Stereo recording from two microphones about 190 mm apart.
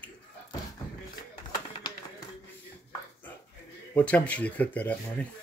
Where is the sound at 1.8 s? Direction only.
25° left (ahead or behind).